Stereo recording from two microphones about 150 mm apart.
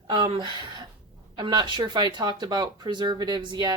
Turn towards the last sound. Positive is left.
turn(degrees=-30)  # may be behind; listen again after turning